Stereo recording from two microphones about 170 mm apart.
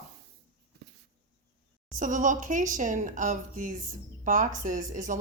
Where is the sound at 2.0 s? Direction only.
50° right (ahead or behind).